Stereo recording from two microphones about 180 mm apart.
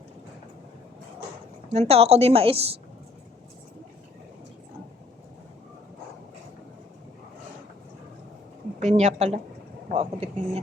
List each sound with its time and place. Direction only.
1.7 s a woman's voice: 35° right (ahead or behind)
8.8 s a woman's voice: 40° right (ahead or behind)